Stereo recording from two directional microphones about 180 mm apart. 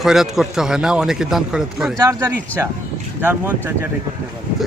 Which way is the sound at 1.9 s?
20° right (ahead or behind).